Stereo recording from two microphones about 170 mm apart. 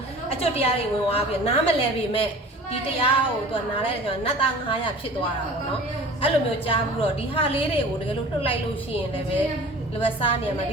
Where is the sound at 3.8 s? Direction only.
30° left (ahead or behind).